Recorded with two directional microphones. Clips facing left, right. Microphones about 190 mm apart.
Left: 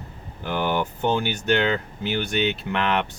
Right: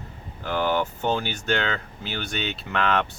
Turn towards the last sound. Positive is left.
turn(degrees=15)  # may be behind; listen again after turning